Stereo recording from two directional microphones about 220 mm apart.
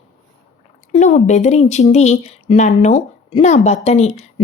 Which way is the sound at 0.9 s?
35° left (ahead or behind).